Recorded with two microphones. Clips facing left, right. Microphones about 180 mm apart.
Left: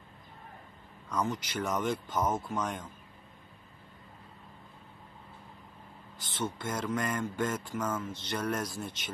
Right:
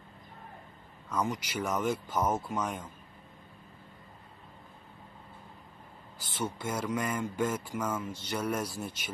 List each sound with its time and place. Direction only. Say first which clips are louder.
1.0 s speech: even; 10° right (ahead or behind)
6.1 s speech: even; 10° right (ahead or behind)